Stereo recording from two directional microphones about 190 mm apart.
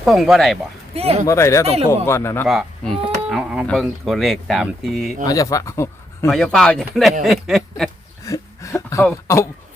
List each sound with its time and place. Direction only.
0.0 s speech: centre (ahead or behind)
0.9 s speech: 30° right (ahead or behind)
1.3 s speech: 15° left (ahead or behind)
1.6 s speech: 30° right (ahead or behind)
2.0 s speech: 15° left (ahead or behind)
2.5 s speech: centre (ahead or behind)
5.2 s speech: 20° left (ahead or behind)
6.3 s speech: 5° left (ahead or behind)
8.2 s a sound: 15° left (ahead or behind)